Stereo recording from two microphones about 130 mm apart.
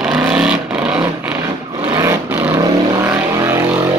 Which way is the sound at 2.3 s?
10° right (ahead or behind).